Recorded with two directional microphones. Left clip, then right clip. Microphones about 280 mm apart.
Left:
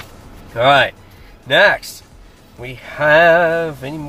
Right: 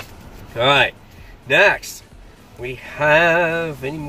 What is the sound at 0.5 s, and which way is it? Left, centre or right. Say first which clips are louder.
Speech: left 3 dB; centre.